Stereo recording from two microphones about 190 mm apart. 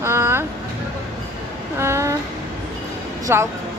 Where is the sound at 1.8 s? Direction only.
15° right (ahead or behind).